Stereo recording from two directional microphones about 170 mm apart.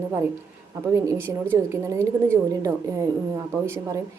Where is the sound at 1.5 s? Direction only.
20° right (ahead or behind).